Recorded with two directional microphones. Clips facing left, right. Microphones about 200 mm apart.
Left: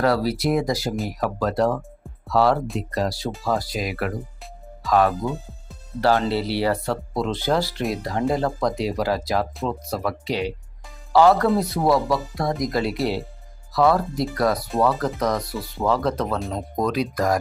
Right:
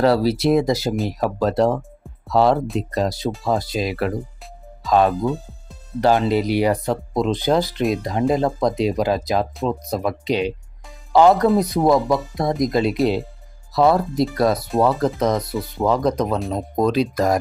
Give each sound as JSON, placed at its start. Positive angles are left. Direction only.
{"t": 0.0, "sound": "speech", "side_deg": -25}